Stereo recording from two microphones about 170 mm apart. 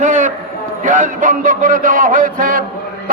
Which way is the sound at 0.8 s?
50° right (ahead or behind).